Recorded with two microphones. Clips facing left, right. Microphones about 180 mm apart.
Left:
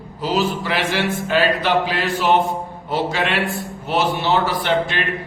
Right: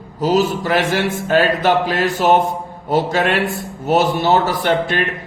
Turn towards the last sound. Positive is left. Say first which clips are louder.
# right 3 dB
turn(degrees=-45)  # may be behind; listen again after turning